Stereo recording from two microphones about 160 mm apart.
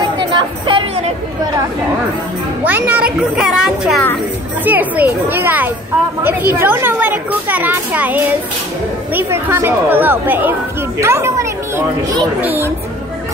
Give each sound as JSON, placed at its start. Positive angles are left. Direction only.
{"t": 0.2, "sound": "speech", "side_deg": -30}
{"t": 2.6, "sound": "a woman's voice", "side_deg": -10}